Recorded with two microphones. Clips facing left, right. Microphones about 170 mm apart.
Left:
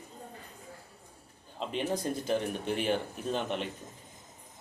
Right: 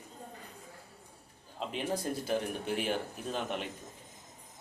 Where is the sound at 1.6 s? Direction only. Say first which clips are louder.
Left 2 dB; 5° right (ahead or behind).